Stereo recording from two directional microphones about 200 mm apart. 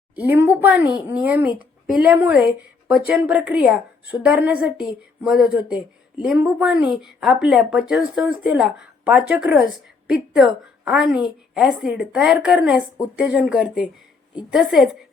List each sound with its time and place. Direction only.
0.2 s a woman's voice: 10° right (ahead or behind)